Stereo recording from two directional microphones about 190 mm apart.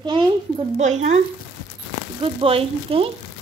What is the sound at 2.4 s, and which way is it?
Speech, 30° right (ahead or behind).